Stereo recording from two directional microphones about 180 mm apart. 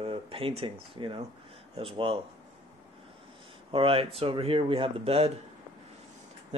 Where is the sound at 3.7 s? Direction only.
30° right (ahead or behind).